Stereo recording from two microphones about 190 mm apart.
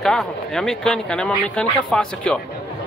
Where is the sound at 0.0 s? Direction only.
Centre (ahead or behind).